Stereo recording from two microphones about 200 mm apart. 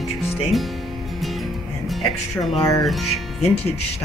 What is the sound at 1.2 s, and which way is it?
Music, centre (ahead or behind).